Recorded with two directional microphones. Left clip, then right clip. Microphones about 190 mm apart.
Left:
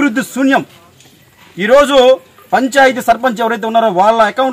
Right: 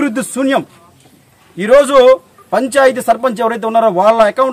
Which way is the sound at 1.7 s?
20° right (ahead or behind).